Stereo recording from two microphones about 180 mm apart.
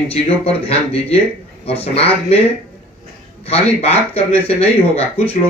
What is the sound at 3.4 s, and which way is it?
Speech, 35° left (ahead or behind).